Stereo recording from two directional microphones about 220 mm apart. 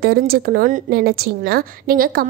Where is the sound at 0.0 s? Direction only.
45° right (ahead or behind).